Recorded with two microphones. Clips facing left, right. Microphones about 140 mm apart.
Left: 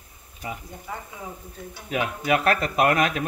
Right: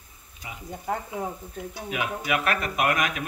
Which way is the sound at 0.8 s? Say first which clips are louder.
Right 11 dB; 55° right (ahead or behind).